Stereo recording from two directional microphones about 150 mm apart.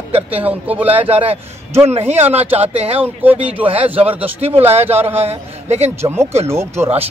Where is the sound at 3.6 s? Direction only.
40° right (ahead or behind).